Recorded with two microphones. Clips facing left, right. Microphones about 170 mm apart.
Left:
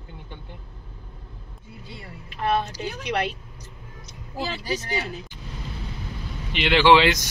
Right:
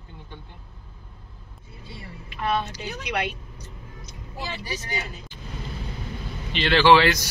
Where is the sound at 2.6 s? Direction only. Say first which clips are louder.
Left 3 dB; 40° left (ahead or behind).